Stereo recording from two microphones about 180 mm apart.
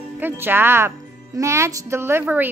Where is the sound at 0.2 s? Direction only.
10° right (ahead or behind).